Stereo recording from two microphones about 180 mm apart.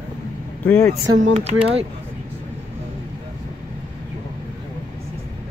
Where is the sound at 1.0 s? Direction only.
90° right.